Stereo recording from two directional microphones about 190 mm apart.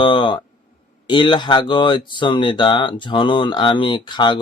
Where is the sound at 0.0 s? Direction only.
25° left (ahead or behind).